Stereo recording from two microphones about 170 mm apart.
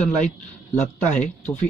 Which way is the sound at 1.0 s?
45° left (ahead or behind).